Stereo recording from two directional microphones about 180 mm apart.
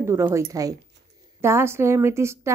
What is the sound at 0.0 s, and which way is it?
A woman's voice, 15° right (ahead or behind).